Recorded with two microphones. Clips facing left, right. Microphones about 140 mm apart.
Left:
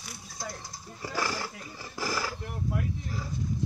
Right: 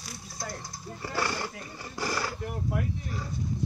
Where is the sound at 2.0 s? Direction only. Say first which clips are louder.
Right 1 dB; 5° left (ahead or behind).